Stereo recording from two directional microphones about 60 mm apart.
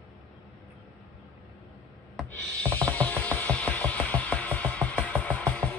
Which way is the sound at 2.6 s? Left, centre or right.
Left.